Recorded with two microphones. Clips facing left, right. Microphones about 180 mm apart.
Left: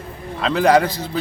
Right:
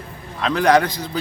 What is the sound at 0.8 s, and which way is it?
Speech, 30° left (ahead or behind).